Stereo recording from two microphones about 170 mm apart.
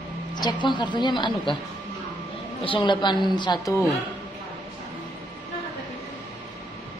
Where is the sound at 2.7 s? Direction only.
25° left (ahead or behind).